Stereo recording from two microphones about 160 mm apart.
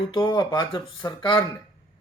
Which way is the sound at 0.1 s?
25° left (ahead or behind).